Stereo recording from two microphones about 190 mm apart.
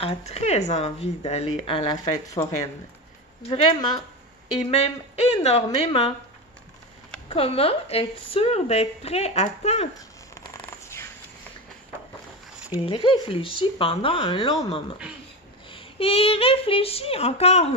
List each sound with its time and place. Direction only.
0.0 s speech: 35° left (ahead or behind)
2.1 s speech: 20° left (ahead or behind)
4.6 s speech: 35° left (ahead or behind)
7.2 s speech: 30° left (ahead or behind)
12.8 s speech: 25° left (ahead or behind)